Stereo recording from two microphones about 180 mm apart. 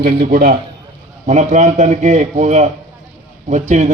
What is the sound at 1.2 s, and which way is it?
A man's voice, 40° right (ahead or behind).